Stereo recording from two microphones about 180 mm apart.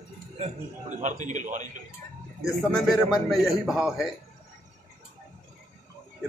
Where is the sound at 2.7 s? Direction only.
Centre (ahead or behind).